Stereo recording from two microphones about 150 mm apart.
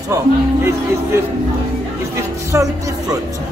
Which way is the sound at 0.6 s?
15° right (ahead or behind).